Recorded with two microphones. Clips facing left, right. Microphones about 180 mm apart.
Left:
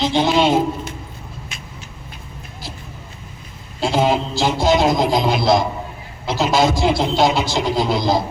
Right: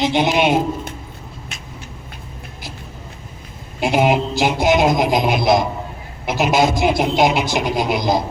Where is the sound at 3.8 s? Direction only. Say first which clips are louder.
Right 1 dB; 15° right (ahead or behind).